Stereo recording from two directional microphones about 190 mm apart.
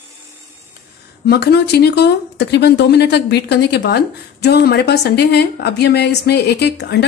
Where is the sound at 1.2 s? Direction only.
60° left (ahead or behind).